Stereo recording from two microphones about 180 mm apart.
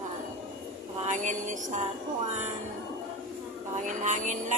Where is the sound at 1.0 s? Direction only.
45° right (ahead or behind).